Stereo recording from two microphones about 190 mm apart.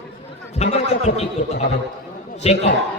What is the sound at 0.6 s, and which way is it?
Speech, 35° left (ahead or behind).